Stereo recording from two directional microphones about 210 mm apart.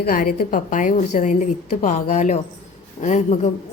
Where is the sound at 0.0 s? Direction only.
45° left (ahead or behind).